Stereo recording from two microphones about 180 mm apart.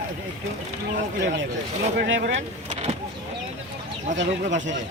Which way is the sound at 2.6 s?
40° right (ahead or behind).